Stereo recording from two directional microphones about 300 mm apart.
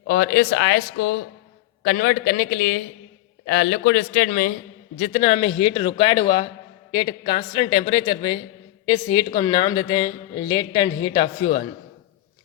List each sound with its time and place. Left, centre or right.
0.1 s speech: left; by 11.3 s centre